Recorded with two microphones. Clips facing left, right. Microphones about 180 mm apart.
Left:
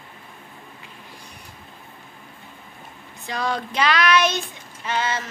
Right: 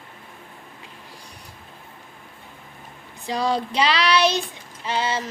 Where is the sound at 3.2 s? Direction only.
30° right (ahead or behind).